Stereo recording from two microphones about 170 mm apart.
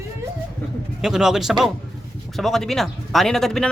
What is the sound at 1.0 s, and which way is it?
Speech, centre (ahead or behind).